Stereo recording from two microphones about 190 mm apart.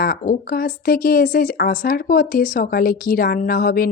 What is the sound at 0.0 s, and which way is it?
Speech, 50° left (ahead or behind).